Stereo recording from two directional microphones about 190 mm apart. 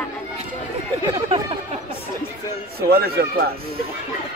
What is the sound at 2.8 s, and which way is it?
Speech, 55° right (ahead or behind).